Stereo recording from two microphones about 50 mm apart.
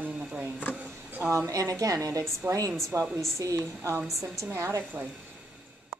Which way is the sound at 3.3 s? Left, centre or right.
Right.